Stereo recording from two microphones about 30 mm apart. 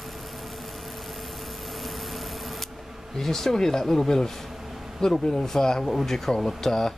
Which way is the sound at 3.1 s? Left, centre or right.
Centre.